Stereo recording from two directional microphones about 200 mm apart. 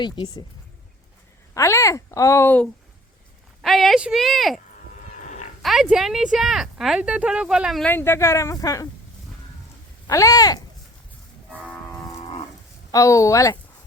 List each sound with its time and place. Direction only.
0.0 s speech: 25° left (ahead or behind)
1.5 s speech: 15° left (ahead or behind)
5.2 s livestock: 35° left (ahead or behind)
5.6 s speech: 5° right (ahead or behind); by 8.9 s 15° left (ahead or behind)
10.1 s speech: 15° left (ahead or behind)
12.9 s speech: 15° left (ahead or behind)